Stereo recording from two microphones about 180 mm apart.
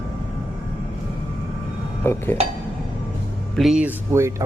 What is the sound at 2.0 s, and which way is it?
Speech, 15° left (ahead or behind).